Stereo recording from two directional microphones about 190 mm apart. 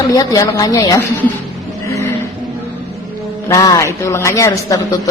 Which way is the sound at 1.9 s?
15° left (ahead or behind).